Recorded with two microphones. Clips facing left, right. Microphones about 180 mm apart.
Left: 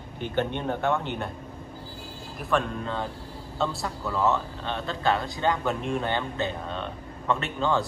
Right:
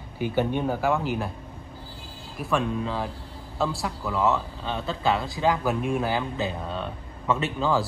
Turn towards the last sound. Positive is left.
turn(degrees=0)  # may be behind; listen again after turning